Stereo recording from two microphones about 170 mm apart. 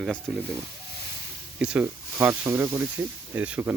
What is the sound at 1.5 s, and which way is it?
Speech, 5° right (ahead or behind).